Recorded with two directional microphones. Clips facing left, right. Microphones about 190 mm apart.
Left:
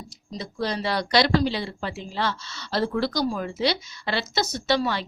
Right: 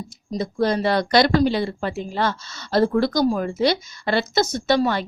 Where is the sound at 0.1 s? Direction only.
50° right (ahead or behind).